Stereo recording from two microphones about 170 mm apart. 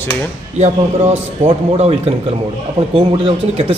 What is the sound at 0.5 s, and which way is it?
A man's voice, 40° right (ahead or behind).